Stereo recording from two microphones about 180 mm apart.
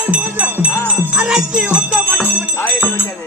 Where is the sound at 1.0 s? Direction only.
10° right (ahead or behind).